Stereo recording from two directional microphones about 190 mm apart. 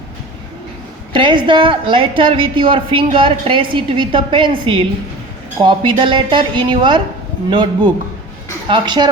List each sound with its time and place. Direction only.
1.1 s a woman's voice: 25° right (ahead or behind)